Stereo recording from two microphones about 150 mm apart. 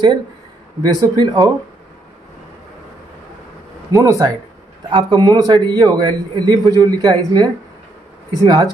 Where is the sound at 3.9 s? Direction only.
25° right (ahead or behind).